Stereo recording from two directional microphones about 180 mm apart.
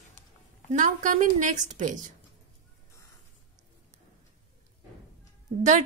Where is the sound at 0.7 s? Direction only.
45° right (ahead or behind).